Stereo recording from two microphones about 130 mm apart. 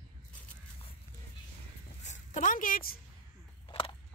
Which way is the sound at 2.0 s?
75° left (ahead or behind).